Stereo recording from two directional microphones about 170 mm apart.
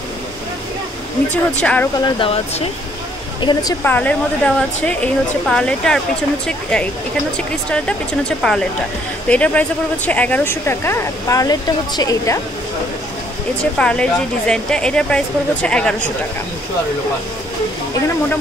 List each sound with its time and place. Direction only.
1.3 s speech: 10° left (ahead or behind)
2.0 s speech: 25° left (ahead or behind)
3.8 s speech: 10° left (ahead or behind)
13.7 s speech: 5° left (ahead or behind)